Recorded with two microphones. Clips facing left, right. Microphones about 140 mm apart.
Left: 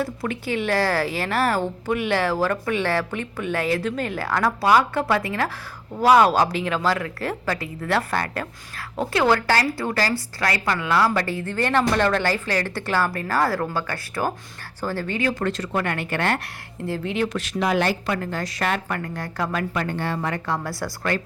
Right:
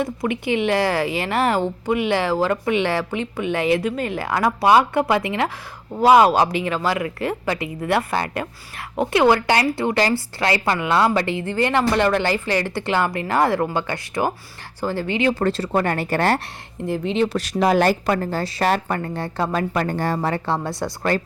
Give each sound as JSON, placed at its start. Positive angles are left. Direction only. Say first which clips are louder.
{"t": 0.0, "sound": "a woman's voice", "louder": "right 3 dB", "side_deg": -15}
{"t": 16.8, "sound": "a woman's voice", "louder": "right 4 dB", "side_deg": -15}
{"t": 17.3, "sound": "a woman's voice", "louder": "right 4 dB", "side_deg": -40}